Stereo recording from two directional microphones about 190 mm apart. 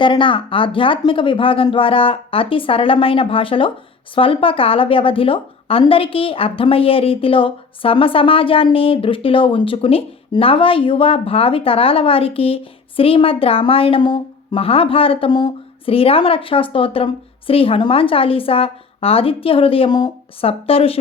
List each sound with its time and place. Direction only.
0.0 s a woman's voice: 25° left (ahead or behind)